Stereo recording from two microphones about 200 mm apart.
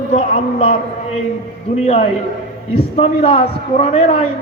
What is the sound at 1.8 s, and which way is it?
A man's voice, 30° left (ahead or behind).